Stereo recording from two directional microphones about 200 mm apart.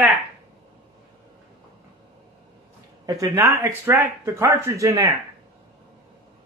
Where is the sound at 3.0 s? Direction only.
15° right (ahead or behind).